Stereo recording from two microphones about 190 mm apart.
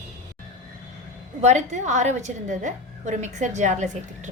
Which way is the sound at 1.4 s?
40° right (ahead or behind).